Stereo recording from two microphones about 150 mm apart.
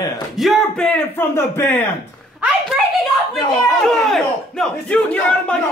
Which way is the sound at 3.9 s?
5° left (ahead or behind).